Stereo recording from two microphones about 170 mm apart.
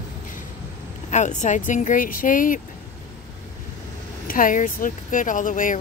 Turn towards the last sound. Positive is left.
turn(degrees=50)  # may be behind; listen again after turning